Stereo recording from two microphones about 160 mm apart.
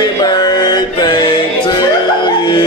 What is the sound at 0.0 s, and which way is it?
Music, 25° left (ahead or behind).